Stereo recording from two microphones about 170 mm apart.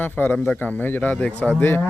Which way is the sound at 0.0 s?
10° left (ahead or behind).